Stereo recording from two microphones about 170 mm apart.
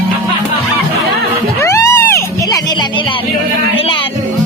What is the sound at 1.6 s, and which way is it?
Music, 15° left (ahead or behind).